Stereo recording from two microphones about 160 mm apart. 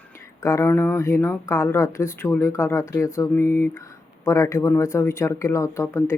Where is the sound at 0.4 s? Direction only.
20° left (ahead or behind).